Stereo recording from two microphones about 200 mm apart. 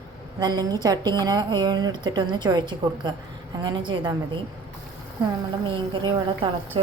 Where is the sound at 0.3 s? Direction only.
20° right (ahead or behind).